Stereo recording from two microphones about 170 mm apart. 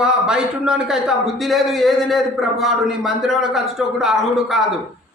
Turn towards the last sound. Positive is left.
turn(degrees=0)  # may be behind; listen again after turning